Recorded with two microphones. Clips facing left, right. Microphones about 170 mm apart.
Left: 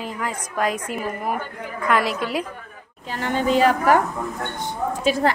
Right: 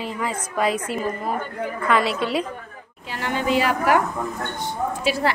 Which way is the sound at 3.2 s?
45° left (ahead or behind).